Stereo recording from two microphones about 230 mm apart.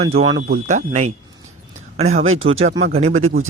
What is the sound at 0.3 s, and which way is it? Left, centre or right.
Speech, right.